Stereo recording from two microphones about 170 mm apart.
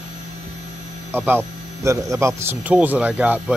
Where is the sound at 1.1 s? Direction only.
10° right (ahead or behind).